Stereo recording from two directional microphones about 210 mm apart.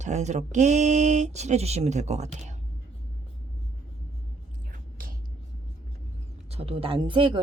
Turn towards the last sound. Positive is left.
turn(degrees=-20)  # may be behind; listen again after turning